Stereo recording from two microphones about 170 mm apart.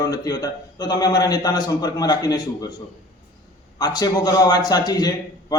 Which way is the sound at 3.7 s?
20° left (ahead or behind).